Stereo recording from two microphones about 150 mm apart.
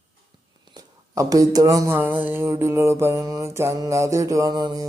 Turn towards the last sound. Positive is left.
turn(degrees=-30)  # may be behind; listen again after turning